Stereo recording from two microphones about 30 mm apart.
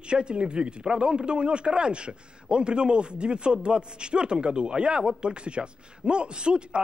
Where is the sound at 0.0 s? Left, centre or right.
Right.